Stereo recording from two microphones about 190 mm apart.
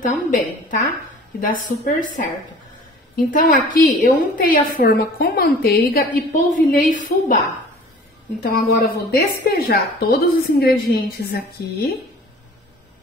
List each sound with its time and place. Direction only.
0.1 s a woman's voice: 40° left (ahead or behind)
3.3 s a woman's voice: 45° left (ahead or behind)
8.4 s a woman's voice: 55° left (ahead or behind)